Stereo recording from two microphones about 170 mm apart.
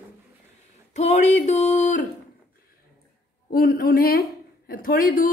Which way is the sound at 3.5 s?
60° left (ahead or behind).